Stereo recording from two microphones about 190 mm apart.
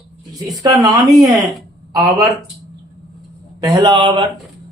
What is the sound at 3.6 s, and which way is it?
Speech, 20° right (ahead or behind).